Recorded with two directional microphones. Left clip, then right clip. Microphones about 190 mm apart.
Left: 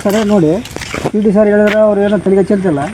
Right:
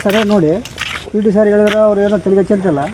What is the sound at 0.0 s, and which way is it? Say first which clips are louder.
Speech: right 1 dB; 20° left (ahead or behind).